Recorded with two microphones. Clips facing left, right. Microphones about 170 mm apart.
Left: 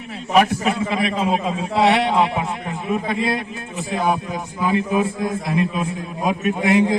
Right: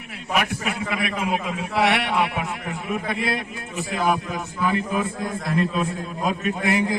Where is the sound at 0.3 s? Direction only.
30° left (ahead or behind).